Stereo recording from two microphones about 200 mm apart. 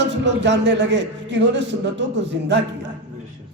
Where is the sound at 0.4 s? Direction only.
60° right (ahead or behind).